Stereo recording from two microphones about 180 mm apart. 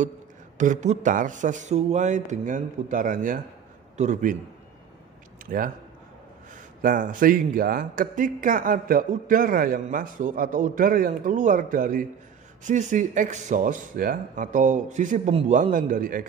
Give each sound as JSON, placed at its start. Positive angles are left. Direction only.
{"t": 0.6, "sound": "a man's voice", "side_deg": -45}
{"t": 5.5, "sound": "speech", "side_deg": -45}